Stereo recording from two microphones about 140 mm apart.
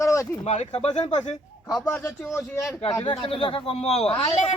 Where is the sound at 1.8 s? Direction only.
15° left (ahead or behind).